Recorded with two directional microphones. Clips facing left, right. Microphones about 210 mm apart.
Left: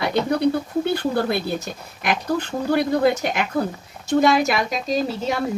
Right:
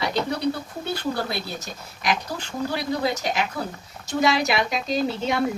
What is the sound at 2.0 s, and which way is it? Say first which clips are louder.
Speech: left 5 dB; 55° left (ahead or behind).